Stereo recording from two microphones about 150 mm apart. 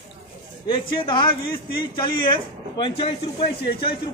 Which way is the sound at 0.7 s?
35° left (ahead or behind).